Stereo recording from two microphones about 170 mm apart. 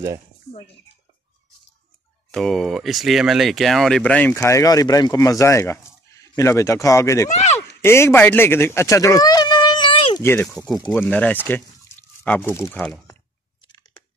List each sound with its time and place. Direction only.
2.3 s speech: centre (ahead or behind); by 7.2 s 15° left (ahead or behind)
7.2 s speech: 40° left (ahead or behind)
7.8 s speech: 15° left (ahead or behind); by 10.2 s 30° left (ahead or behind)
10.2 s speech: 15° left (ahead or behind)
12.7 s speech: 5° left (ahead or behind)